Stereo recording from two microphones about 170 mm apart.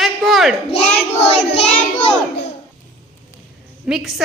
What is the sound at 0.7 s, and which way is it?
Child singing, 40° left (ahead or behind).